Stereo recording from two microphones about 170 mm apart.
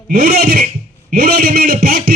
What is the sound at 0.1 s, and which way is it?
Speech, 55° right (ahead or behind).